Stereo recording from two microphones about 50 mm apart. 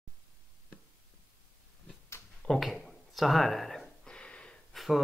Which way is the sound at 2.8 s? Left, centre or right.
Centre.